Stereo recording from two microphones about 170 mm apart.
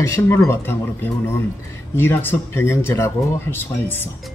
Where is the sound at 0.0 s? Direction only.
15° left (ahead or behind).